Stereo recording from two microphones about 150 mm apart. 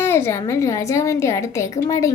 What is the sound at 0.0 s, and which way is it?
A woman's voice, 15° left (ahead or behind).